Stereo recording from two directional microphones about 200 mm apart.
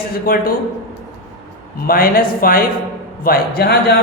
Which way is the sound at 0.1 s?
45° left (ahead or behind).